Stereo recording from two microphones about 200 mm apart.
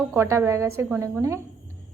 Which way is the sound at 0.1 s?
10° right (ahead or behind).